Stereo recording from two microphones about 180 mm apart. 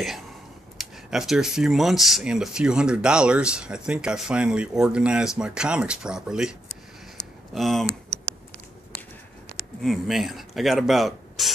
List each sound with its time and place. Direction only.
0.7 s speech: centre (ahead or behind)
7.2 s a sound: 70° left (ahead or behind)
7.5 s typing: centre (ahead or behind)
9.8 s speech: centre (ahead or behind)